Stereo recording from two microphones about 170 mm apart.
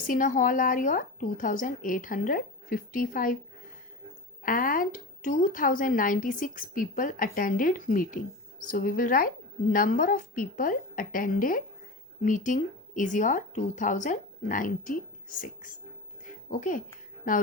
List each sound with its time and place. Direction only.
0.0 s a woman's voice: 50° left (ahead or behind)
4.4 s a woman's voice: 55° left (ahead or behind)